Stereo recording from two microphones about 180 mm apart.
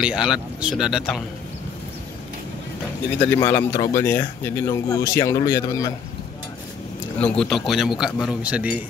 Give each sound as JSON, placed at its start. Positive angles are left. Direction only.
{"t": 0.0, "sound": "a man's voice", "side_deg": -5}
{"t": 3.2, "sound": "speech", "side_deg": 15}
{"t": 7.2, "sound": "a man's voice", "side_deg": 5}